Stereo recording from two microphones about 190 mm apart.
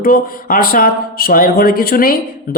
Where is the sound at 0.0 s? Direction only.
50° left (ahead or behind).